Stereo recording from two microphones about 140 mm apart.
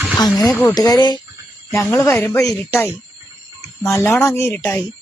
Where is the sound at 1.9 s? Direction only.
15° left (ahead or behind).